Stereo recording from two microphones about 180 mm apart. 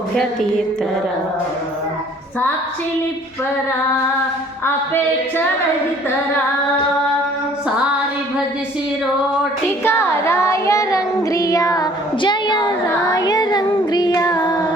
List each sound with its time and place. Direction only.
9.8 s child singing: 15° left (ahead or behind)